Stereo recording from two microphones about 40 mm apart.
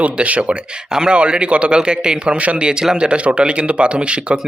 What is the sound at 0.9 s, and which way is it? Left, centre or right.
Speech, centre.